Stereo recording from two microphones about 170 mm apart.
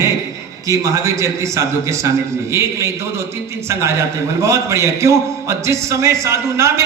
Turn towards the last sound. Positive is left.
turn(degrees=-15)  # may be behind; listen again after turning